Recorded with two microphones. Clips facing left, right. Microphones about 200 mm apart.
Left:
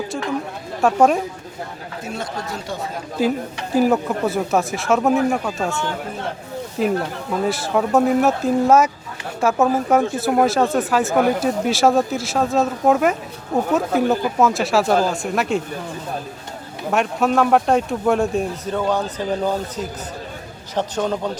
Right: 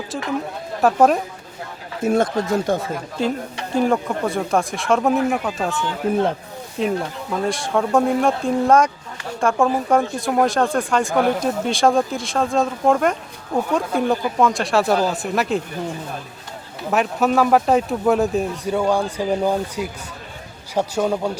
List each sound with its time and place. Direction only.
0.8 s speech: centre (ahead or behind)
2.0 s speech: 50° right (ahead or behind)
3.2 s speech: 5° left (ahead or behind)
6.8 s speech: 5° left (ahead or behind)
16.9 s a man's voice: centre (ahead or behind)